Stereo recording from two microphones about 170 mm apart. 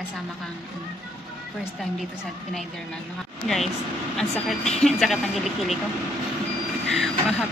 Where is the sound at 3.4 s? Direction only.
Centre (ahead or behind).